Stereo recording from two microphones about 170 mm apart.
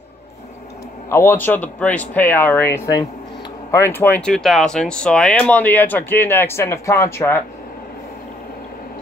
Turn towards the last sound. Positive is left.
turn(degrees=15)  # may be behind; listen again after turning